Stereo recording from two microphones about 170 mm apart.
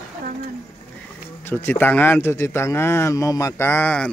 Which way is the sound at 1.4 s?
10° left (ahead or behind).